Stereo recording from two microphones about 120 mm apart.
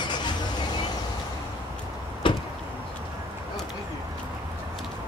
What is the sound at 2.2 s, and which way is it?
Door, 45° left (ahead or behind).